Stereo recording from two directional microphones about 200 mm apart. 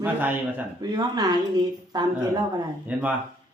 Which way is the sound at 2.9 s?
5° right (ahead or behind).